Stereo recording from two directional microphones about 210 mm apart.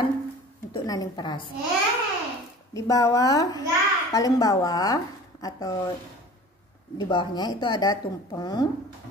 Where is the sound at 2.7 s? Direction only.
15° left (ahead or behind).